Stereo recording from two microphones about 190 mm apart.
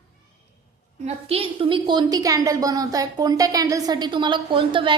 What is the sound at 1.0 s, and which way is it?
A woman's voice, 30° right (ahead or behind).